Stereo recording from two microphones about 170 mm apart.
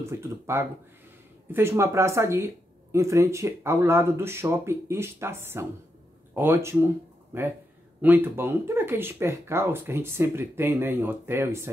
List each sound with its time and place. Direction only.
0.0 s speech: 15° right (ahead or behind)